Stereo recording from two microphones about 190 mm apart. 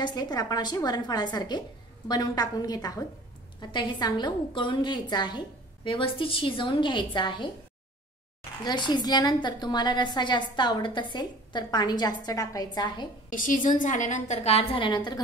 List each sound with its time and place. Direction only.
0.0 s a woman's voice: 20° left (ahead or behind)
8.6 s a woman's voice: 25° left (ahead or behind)
13.3 s a woman's voice: 45° left (ahead or behind); by 15.1 s 25° left (ahead or behind)